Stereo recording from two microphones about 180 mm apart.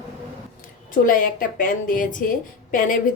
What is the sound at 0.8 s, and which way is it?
Speech, 50° left (ahead or behind).